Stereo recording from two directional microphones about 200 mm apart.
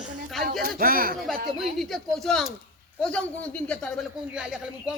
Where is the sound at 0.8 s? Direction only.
45° right (ahead or behind).